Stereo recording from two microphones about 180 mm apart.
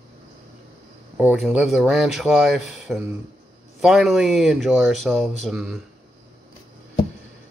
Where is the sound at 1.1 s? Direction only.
5° right (ahead or behind).